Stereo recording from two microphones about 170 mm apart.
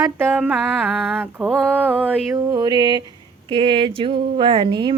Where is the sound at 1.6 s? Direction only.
10° right (ahead or behind).